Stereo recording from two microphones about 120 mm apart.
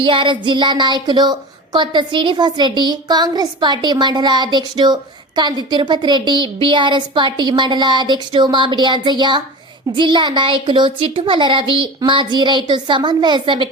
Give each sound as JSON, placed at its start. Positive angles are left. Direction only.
{"t": 0.0, "sound": "speech", "side_deg": -45}